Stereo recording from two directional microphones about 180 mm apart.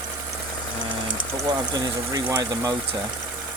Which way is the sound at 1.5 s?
20° right (ahead or behind).